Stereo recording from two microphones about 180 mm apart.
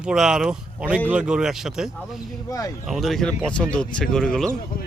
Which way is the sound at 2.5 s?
20° left (ahead or behind).